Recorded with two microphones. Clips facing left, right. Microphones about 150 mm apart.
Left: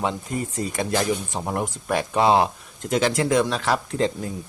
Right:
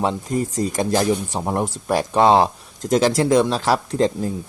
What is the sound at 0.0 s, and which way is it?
Speech, 35° right (ahead or behind).